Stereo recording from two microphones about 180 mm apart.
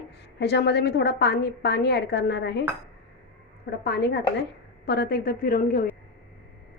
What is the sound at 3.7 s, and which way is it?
A woman's voice, 65° left (ahead or behind).